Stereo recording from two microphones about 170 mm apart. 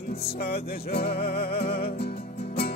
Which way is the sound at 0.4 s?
65° left (ahead or behind).